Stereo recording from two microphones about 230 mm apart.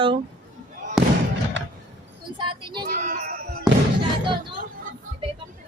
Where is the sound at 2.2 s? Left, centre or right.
Right.